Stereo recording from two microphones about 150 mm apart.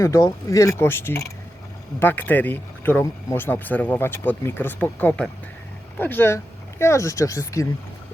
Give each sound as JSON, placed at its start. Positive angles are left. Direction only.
{"t": 0.0, "sound": "speech", "side_deg": 20}